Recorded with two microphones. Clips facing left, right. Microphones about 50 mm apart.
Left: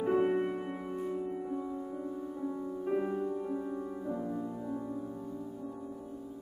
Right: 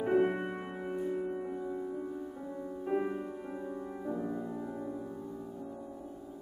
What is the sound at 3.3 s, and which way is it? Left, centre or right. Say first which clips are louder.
Music: left 6 dB; right.